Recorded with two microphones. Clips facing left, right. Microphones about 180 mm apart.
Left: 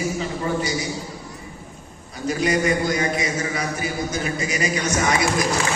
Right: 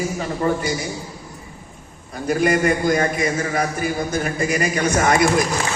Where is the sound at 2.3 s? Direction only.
55° right (ahead or behind).